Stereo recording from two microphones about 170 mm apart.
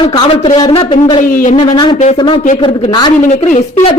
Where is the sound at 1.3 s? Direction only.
55° left (ahead or behind).